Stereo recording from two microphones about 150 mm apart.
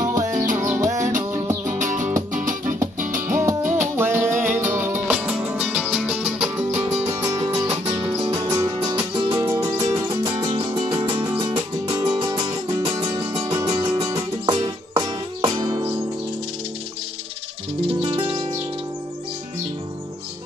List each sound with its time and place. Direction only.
0.0 s music: 20° right (ahead or behind)
1.8 s music: 55° right (ahead or behind)
3.3 s music: 15° right (ahead or behind)
6.7 s music: 45° right (ahead or behind)
7.1 s music: 25° right (ahead or behind)
9.1 s music: 35° right (ahead or behind)
9.4 s music: 20° right (ahead or behind)
10.7 s music: 30° right (ahead or behind)
11.1 s music: 15° right (ahead or behind)
17.8 s music: 40° right (ahead or behind)